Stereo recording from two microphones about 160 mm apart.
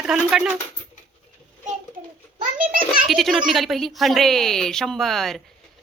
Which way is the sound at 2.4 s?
60° right (ahead or behind).